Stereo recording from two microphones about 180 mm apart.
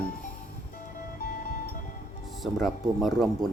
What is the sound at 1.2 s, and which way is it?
Music, 55° left (ahead or behind).